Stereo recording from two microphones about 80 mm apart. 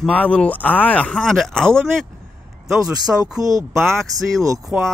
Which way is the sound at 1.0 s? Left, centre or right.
Centre.